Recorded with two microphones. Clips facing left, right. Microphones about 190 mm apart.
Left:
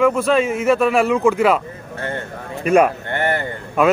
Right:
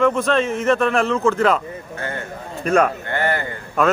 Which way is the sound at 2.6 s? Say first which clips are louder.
Left 3 dB; 10° left (ahead or behind).